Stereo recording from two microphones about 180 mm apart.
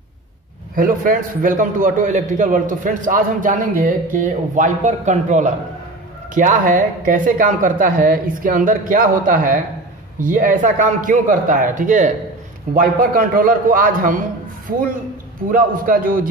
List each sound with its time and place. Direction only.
0.7 s a man's voice: 50° right (ahead or behind)
15.5 s a man's voice: 50° right (ahead or behind)